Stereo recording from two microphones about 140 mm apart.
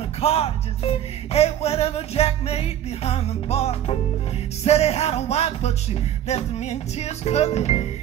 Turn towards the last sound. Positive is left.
turn(degrees=50)  # may be behind; listen again after turning